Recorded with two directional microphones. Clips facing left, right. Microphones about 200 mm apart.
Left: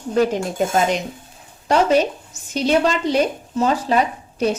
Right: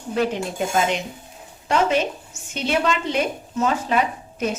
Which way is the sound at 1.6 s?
40° left (ahead or behind).